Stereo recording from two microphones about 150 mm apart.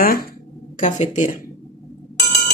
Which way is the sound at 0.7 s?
55° left (ahead or behind).